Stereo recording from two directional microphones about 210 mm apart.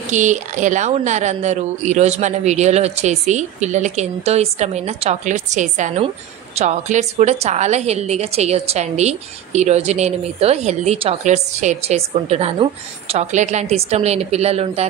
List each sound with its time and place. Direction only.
0.1 s a woman's voice: 35° right (ahead or behind)